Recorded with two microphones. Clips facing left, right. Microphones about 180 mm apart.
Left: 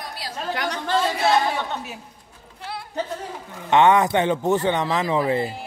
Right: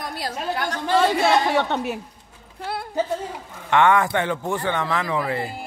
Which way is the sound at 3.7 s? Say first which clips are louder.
Left 2 dB; 20° left (ahead or behind).